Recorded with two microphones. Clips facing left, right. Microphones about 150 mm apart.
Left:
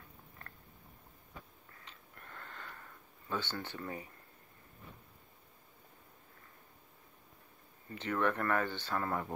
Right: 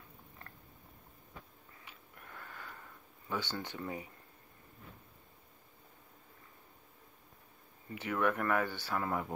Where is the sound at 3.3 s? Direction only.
15° right (ahead or behind).